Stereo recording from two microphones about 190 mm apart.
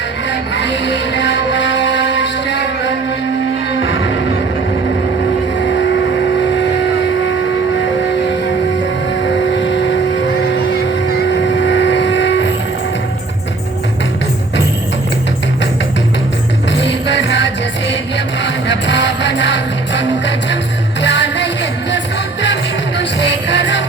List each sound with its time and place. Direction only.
0.3 s a sound: 70° left (ahead or behind)
9.2 s vehicle: 70° left (ahead or behind)
11.1 s vehicle: 70° left (ahead or behind)
18.4 s music: 70° left (ahead or behind)
23.5 s music: 70° left (ahead or behind)